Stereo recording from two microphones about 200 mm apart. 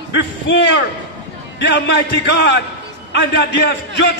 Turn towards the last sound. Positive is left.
turn(degrees=60)  # may be behind; listen again after turning